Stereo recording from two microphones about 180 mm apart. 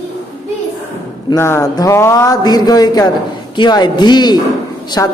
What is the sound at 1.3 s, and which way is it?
A woman's voice, 15° left (ahead or behind).